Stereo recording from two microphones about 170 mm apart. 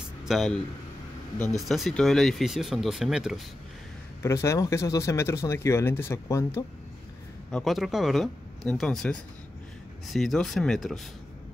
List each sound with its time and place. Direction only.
0.2 s speech: centre (ahead or behind)
1.7 s speech: centre (ahead or behind)
4.2 s speech: 15° left (ahead or behind)
7.5 s speech: centre (ahead or behind)